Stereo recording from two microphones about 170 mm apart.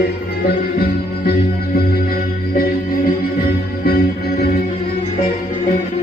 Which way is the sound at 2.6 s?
60° left (ahead or behind).